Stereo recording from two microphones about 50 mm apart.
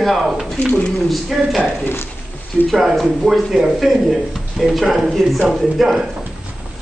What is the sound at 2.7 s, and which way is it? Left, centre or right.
Speech, centre.